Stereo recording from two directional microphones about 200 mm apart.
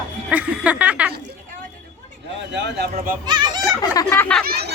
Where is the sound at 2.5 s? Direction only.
60° right (ahead or behind).